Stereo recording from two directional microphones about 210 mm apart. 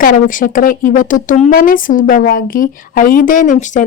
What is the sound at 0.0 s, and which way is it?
A woman's voice, 40° left (ahead or behind).